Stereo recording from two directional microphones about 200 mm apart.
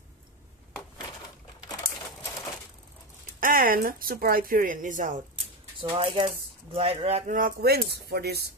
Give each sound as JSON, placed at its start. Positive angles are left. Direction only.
{"t": 3.3, "sound": "a woman's voice", "side_deg": -45}
{"t": 5.8, "sound": "a woman's voice", "side_deg": -25}